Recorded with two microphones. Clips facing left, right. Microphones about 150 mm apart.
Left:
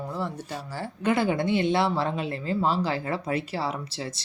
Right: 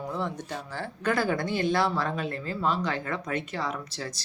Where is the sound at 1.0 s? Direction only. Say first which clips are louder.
Left 3 dB; 25° left (ahead or behind).